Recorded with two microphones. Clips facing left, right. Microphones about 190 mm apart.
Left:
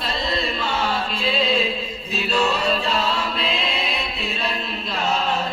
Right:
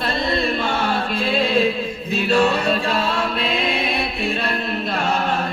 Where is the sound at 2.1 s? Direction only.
55° right (ahead or behind).